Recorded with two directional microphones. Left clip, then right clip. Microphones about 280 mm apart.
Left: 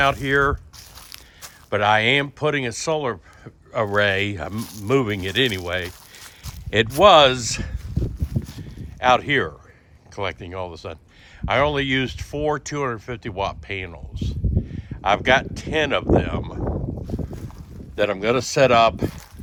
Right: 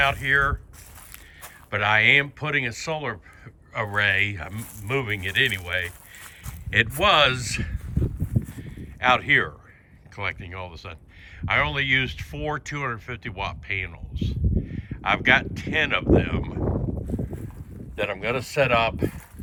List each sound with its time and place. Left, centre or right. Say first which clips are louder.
0.0 s speech: left 2 dB; centre
1.7 s speech: left 1 dB; centre
8.4 s a sound: left 1 dB; centre
10.2 s speech: left 3 dB; centre
17.9 s speech: left 6 dB; left